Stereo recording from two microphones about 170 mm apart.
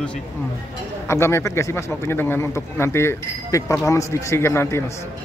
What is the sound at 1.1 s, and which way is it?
Speech, 15° left (ahead or behind).